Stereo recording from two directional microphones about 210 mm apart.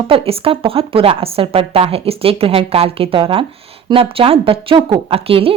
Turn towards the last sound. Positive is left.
turn(degrees=-25)  # may be behind; listen again after turning